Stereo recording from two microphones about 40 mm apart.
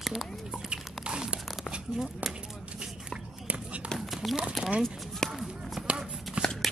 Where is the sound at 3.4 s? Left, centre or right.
Right.